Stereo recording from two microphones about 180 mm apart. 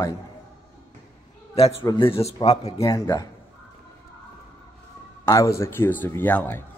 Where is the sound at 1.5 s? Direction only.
35° left (ahead or behind).